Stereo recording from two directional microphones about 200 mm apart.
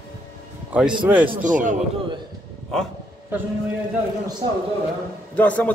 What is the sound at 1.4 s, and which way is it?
Speech, 40° right (ahead or behind).